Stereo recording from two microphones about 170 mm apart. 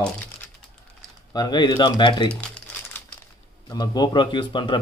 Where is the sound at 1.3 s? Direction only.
25° left (ahead or behind).